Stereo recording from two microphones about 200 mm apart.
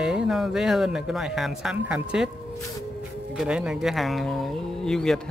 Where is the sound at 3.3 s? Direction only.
5° right (ahead or behind).